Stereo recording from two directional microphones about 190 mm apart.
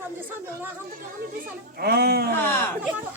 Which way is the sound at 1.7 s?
55° right (ahead or behind).